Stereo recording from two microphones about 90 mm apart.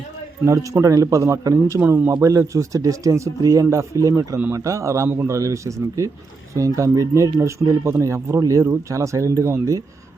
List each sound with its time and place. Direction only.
0.4 s speech: 35° right (ahead or behind)
5.0 s speech: 25° right (ahead or behind)